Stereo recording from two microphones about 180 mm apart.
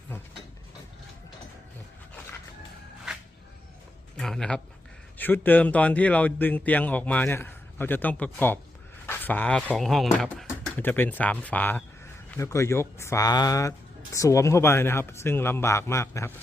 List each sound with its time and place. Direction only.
4.2 s speech: 5° left (ahead or behind)
9.0 s a sound: 10° left (ahead or behind)
9.6 s speech: centre (ahead or behind)